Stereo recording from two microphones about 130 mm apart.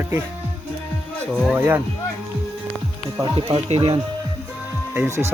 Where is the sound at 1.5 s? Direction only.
15° right (ahead or behind).